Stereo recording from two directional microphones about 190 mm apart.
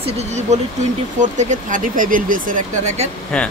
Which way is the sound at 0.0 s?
35° right (ahead or behind).